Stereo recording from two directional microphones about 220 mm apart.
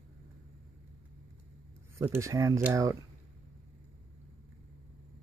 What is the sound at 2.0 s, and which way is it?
Speech, 15° right (ahead or behind).